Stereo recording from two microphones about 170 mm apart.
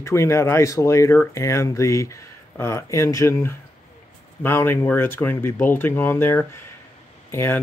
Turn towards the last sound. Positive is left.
turn(degrees=15)  # may be behind; listen again after turning